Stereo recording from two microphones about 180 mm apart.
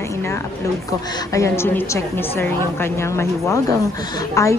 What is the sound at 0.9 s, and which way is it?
A woman's voice, 15° left (ahead or behind).